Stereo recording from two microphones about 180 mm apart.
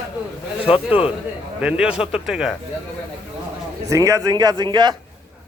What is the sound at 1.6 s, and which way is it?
Speech, 5° right (ahead or behind).